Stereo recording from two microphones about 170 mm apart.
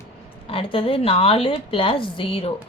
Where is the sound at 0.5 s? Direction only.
35° left (ahead or behind).